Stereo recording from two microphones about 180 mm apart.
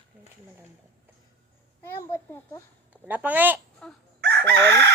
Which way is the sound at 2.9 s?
10° right (ahead or behind).